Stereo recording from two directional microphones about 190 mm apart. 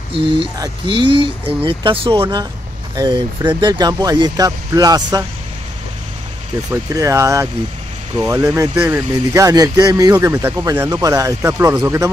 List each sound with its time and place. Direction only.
0.1 s speech: 25° right (ahead or behind)
6.7 s speech: 15° right (ahead or behind)
8.5 s speech: 10° right (ahead or behind)